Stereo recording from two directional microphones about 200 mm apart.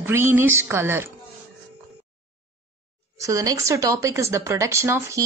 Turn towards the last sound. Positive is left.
turn(degrees=-15)  # may be behind; listen again after turning